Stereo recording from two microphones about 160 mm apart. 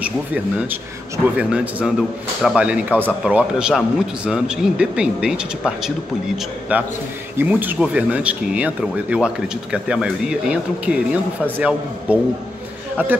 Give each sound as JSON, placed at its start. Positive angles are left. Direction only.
{"t": 0.0, "sound": "speech", "side_deg": -10}
{"t": 12.9, "sound": "a man's voice", "side_deg": -10}